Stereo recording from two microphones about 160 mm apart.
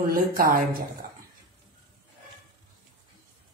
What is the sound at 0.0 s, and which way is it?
Speech, 65° right (ahead or behind).